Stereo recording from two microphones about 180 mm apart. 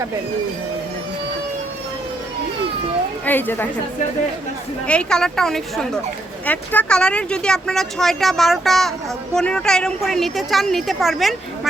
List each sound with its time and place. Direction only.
3.2 s a woman's voice: 10° left (ahead or behind)
4.9 s speech: 5° left (ahead or behind)